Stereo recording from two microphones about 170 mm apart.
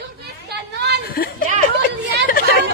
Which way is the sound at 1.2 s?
60° left (ahead or behind).